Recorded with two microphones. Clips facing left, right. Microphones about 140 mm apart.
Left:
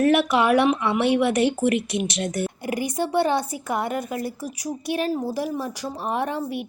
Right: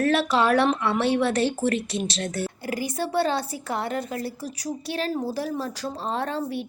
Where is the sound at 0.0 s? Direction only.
15° left (ahead or behind).